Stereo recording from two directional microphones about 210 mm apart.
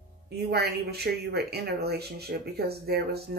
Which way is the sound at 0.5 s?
50° right (ahead or behind).